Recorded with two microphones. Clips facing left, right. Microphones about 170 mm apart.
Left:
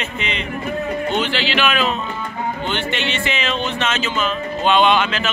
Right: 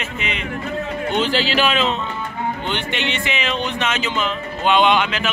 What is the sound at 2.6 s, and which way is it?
Speech, 15° right (ahead or behind).